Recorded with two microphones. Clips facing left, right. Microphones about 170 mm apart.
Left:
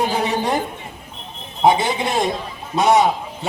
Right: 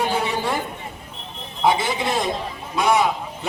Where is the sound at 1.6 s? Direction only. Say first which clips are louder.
Left 4 dB; 20° left (ahead or behind).